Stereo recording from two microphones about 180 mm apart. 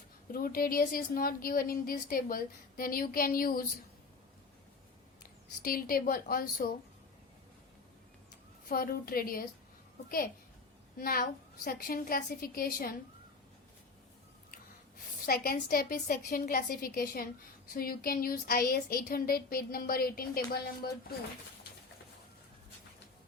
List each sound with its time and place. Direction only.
0.3 s a woman's voice: 55° left (ahead or behind)
5.6 s a woman's voice: 55° left (ahead or behind)
8.7 s speech: 55° left (ahead or behind)
10.9 s a woman's voice: 55° left (ahead or behind)
15.3 s a woman's voice: 55° left (ahead or behind)